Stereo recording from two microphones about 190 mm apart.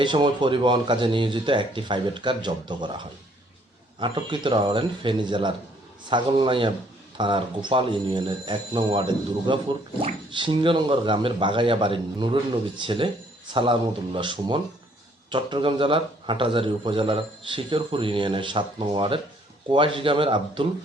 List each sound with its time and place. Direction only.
0.0 s a man's voice: 25° right (ahead or behind)
4.0 s a man's voice: 25° right (ahead or behind)